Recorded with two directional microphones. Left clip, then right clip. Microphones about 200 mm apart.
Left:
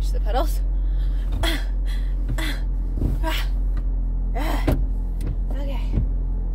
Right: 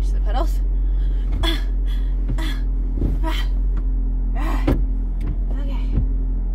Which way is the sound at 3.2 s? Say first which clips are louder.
Left 2 dB; 25° left (ahead or behind).